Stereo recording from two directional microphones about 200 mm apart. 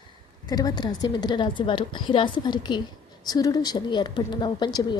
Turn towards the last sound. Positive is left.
turn(degrees=20)  # may be behind; listen again after turning